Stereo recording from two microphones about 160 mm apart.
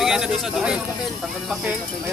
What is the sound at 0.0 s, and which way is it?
Speech, 5° right (ahead or behind).